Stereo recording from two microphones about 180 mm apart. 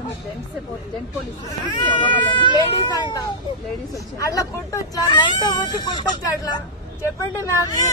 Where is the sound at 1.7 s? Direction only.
25° left (ahead or behind).